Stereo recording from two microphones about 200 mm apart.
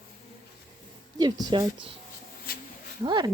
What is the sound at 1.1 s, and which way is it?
Speech, 20° right (ahead or behind).